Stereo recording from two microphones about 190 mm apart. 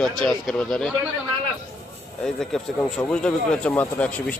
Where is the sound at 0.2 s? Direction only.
Centre (ahead or behind).